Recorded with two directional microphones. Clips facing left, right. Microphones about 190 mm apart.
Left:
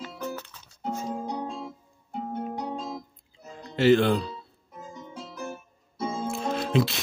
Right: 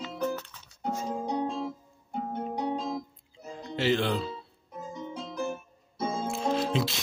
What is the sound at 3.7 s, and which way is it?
Speech, 50° left (ahead or behind).